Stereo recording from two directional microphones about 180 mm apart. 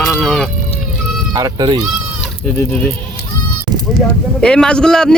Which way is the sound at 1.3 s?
20° right (ahead or behind).